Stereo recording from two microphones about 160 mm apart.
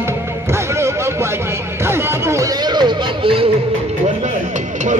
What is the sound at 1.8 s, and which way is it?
Speech, 15° right (ahead or behind).